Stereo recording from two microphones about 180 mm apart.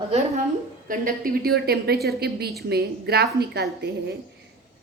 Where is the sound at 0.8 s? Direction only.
50° right (ahead or behind).